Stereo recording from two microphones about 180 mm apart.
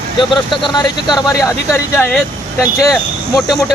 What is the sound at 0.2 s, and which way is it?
Speech, 25° left (ahead or behind).